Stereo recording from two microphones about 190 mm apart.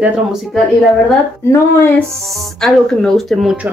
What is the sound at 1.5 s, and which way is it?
Speech, 15° left (ahead or behind).